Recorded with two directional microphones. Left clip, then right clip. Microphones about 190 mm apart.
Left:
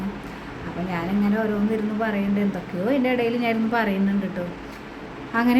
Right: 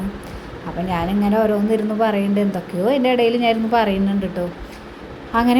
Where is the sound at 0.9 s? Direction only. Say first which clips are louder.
Right 6 dB; 25° right (ahead or behind).